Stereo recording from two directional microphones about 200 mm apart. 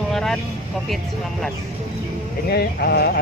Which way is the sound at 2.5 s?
55° left (ahead or behind).